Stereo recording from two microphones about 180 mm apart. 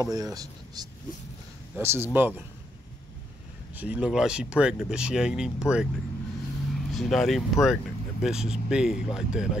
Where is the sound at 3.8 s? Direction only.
5° right (ahead or behind).